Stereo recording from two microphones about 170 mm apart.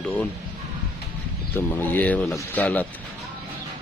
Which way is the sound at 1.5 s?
10° left (ahead or behind).